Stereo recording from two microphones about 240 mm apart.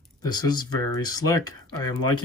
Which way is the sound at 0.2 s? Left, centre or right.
Centre.